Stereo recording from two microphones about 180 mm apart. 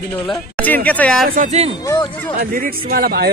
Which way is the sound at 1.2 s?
45° right (ahead or behind).